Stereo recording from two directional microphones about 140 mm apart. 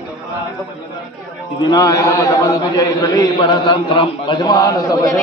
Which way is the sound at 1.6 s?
25° left (ahead or behind).